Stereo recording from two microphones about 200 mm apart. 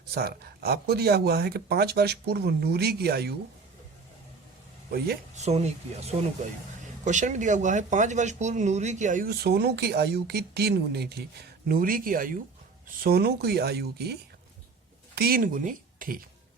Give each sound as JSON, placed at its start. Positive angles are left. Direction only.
{"t": 0.1, "sound": "speech", "side_deg": -50}
{"t": 4.9, "sound": "speech", "side_deg": -50}
{"t": 5.3, "sound": "speech", "side_deg": -35}